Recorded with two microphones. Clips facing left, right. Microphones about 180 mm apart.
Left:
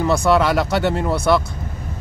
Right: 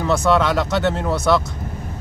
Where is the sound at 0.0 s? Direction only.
10° left (ahead or behind).